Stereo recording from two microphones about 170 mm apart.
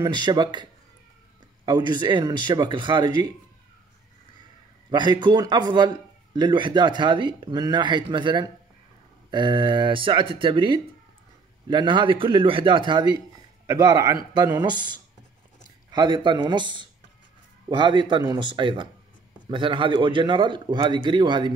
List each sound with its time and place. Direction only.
0.0 s a man's voice: 25° right (ahead or behind)
1.7 s a man's voice: 25° right (ahead or behind)
4.9 s a man's voice: 25° right (ahead or behind)